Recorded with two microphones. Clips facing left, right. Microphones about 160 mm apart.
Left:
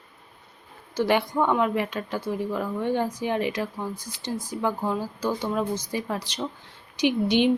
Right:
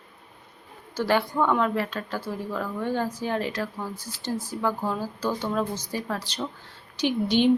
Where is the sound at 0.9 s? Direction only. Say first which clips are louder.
Left 1 dB; 15° left (ahead or behind).